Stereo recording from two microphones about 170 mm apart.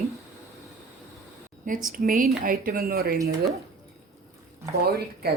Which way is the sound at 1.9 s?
55° right (ahead or behind).